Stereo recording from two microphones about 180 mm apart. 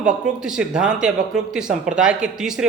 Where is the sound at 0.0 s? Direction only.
5° right (ahead or behind).